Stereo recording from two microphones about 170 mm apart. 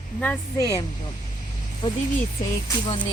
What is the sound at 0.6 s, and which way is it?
Speech, 20° left (ahead or behind).